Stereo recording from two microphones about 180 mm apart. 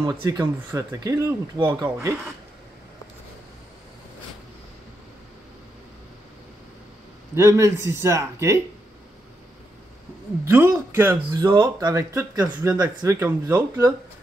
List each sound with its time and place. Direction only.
0.0 s speech: 20° right (ahead or behind)
7.3 s speech: 15° right (ahead or behind)
10.4 s speech: 15° right (ahead or behind)
12.4 s speech: 25° right (ahead or behind)
13.0 s speech: 10° right (ahead or behind)